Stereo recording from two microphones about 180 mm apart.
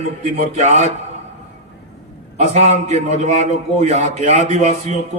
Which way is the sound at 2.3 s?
40° right (ahead or behind).